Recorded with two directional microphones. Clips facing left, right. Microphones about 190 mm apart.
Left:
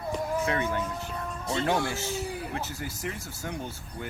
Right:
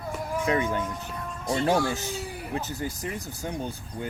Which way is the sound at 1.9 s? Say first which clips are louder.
Even; 15° right (ahead or behind).